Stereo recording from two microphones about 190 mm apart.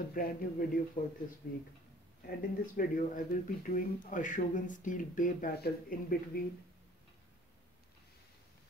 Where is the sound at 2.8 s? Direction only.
45° left (ahead or behind).